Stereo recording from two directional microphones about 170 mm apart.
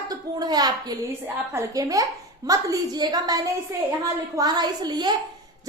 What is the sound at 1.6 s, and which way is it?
A woman's voice, 20° right (ahead or behind).